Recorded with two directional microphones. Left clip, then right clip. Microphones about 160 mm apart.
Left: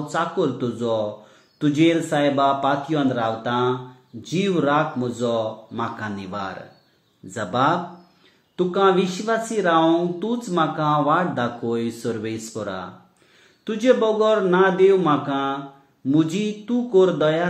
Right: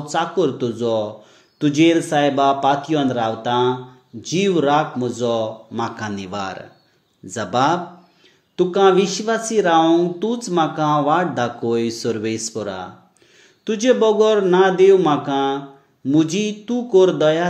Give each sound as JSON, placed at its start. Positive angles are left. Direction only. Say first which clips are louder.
{"t": 0.1, "sound": "speech", "louder": "right 4 dB", "side_deg": -35}